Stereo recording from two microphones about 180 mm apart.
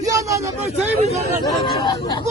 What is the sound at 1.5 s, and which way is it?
Speech, 25° left (ahead or behind).